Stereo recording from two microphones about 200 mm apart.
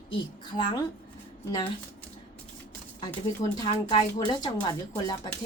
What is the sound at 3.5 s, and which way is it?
Speech, 20° left (ahead or behind).